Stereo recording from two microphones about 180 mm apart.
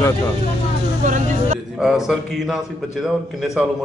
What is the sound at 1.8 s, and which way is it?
Speech, 5° right (ahead or behind).